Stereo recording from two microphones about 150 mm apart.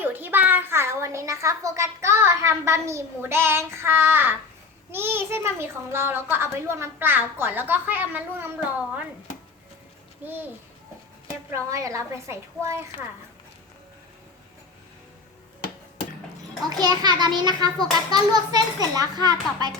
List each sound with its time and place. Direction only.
0.0 s a child's voice: 15° right (ahead or behind)
10.2 s speech: 10° right (ahead or behind)
11.5 s a child's voice: 20° right (ahead or behind)
16.8 s a child's voice: 25° right (ahead or behind)